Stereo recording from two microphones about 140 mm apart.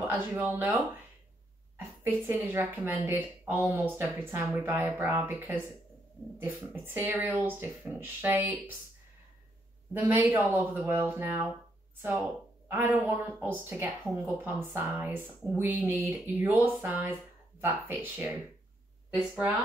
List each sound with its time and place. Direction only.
0.0 s speech: 10° right (ahead or behind)
1.8 s a woman's voice: 15° right (ahead or behind)
9.9 s speech: 15° right (ahead or behind)
12.6 s speech: 15° right (ahead or behind)